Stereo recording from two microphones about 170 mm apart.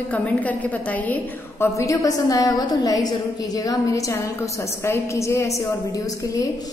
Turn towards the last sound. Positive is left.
turn(degrees=20)  # may be behind; listen again after turning